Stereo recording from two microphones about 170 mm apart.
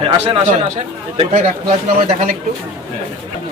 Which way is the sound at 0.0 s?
35° right (ahead or behind).